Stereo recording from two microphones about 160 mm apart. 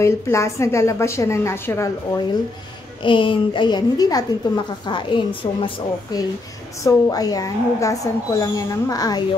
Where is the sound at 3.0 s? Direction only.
30° left (ahead or behind).